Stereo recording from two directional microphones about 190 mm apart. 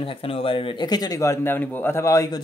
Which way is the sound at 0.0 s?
30° left (ahead or behind).